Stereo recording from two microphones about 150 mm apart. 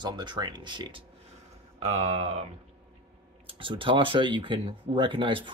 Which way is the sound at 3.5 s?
35° right (ahead or behind).